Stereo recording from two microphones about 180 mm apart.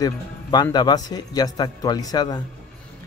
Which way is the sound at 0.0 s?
20° left (ahead or behind).